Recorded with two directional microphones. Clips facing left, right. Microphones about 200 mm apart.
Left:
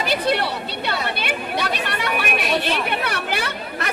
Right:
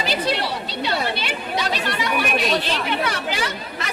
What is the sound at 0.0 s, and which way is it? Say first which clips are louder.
A woman's voice: left 2 dB; 55° left (ahead or behind).